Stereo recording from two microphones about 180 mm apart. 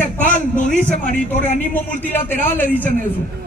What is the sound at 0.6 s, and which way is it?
A man's voice, 40° left (ahead or behind).